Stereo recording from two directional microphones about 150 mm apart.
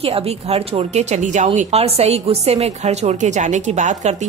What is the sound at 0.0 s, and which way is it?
Speech, 40° right (ahead or behind).